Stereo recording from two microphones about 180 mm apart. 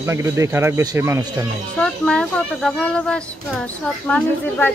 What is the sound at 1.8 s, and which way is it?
Speech, 5° left (ahead or behind).